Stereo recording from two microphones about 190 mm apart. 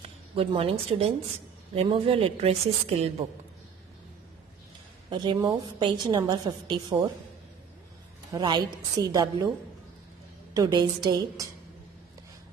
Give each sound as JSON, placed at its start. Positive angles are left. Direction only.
{"t": 0.4, "sound": "a woman's voice", "side_deg": -30}
{"t": 5.1, "sound": "a woman's voice", "side_deg": -25}
{"t": 8.3, "sound": "a woman's voice", "side_deg": -25}
{"t": 10.5, "sound": "a woman's voice", "side_deg": -20}